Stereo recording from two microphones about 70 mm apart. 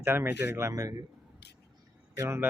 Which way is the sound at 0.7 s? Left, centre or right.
Right.